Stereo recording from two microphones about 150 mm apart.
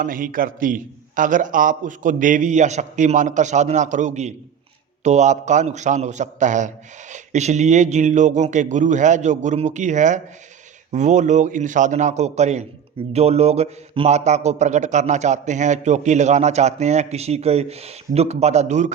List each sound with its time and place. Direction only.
0.0 s a man's voice: 65° right (ahead or behind)